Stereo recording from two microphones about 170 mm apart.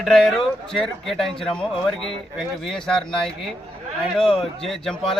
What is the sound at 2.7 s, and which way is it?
Speech, 5° left (ahead or behind).